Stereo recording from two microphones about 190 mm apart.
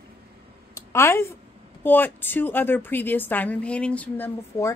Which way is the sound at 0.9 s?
15° left (ahead or behind).